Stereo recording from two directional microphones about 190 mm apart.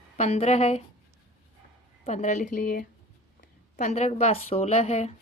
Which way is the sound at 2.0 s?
35° left (ahead or behind).